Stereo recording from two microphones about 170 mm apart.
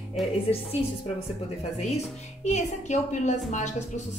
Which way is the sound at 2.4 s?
40° left (ahead or behind).